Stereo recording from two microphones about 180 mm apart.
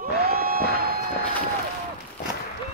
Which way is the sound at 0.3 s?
55° right (ahead or behind).